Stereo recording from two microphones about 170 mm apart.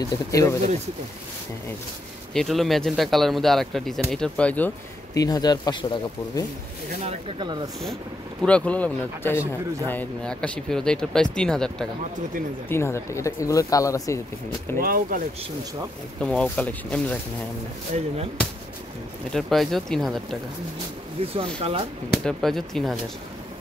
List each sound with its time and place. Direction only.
0.3 s speech: 20° left (ahead or behind)
2.3 s speech: centre (ahead or behind)
5.1 s speech: 20° left (ahead or behind)
7.3 s speech: 25° right (ahead or behind)
8.4 s speech: 5° left (ahead or behind)
12.6 s speech: 15° left (ahead or behind)
14.8 s speech: 60° right (ahead or behind)
16.2 s speech: 5° left (ahead or behind)
17.9 s speech: 40° right (ahead or behind)
19.3 s speech: centre (ahead or behind)
21.2 s speech: 35° right (ahead or behind)
22.1 s speech: centre (ahead or behind)